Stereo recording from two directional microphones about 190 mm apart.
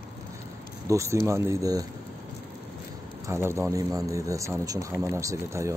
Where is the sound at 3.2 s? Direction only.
15° right (ahead or behind).